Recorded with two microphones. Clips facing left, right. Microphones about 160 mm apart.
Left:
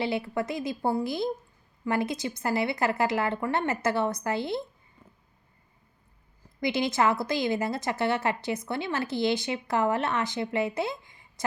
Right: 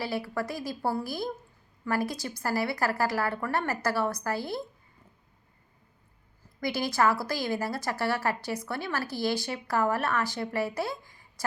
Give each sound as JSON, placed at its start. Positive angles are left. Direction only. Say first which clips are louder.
{"t": 0.0, "sound": "a woman's voice", "louder": "left 3 dB", "side_deg": 20}
{"t": 6.6, "sound": "a woman's voice", "louder": "left 1 dB", "side_deg": 20}